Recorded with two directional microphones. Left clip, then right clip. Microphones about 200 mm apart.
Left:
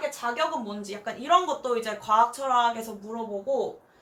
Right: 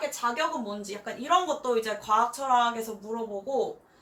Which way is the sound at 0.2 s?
10° left (ahead or behind).